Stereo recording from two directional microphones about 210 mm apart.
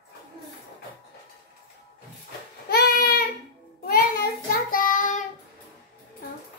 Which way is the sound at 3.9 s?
45° left (ahead or behind).